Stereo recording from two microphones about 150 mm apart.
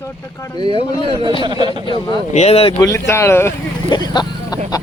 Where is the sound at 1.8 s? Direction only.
30° left (ahead or behind).